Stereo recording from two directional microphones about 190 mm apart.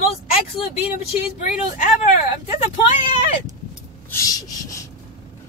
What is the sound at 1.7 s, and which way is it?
Speech, 40° left (ahead or behind).